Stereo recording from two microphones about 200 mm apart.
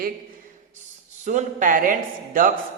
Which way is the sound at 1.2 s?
40° right (ahead or behind).